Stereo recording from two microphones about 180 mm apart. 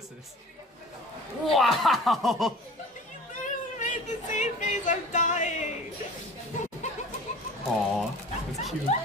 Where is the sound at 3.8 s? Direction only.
45° left (ahead or behind).